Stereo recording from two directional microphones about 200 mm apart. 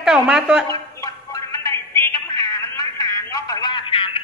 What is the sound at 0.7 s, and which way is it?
Music, 15° left (ahead or behind).